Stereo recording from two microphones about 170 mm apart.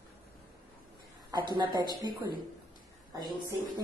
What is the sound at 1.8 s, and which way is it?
Speech, 25° right (ahead or behind).